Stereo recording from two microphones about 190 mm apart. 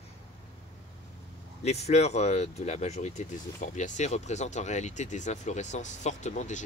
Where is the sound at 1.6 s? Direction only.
35° left (ahead or behind).